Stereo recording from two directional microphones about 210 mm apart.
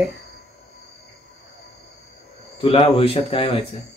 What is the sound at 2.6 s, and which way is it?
Speech, 25° left (ahead or behind).